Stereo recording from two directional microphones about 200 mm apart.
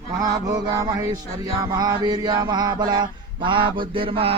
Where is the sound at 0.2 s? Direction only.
20° right (ahead or behind).